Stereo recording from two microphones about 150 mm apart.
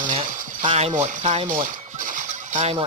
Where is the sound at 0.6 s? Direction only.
45° right (ahead or behind).